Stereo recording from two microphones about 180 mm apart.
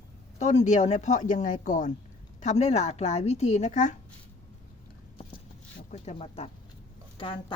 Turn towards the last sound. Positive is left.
turn(degrees=25)  # may be behind; listen again after turning